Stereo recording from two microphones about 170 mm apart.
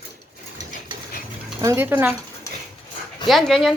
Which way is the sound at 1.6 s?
15° right (ahead or behind).